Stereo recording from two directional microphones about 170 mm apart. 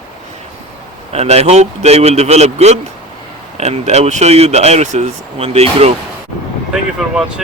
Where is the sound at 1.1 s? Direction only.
40° right (ahead or behind).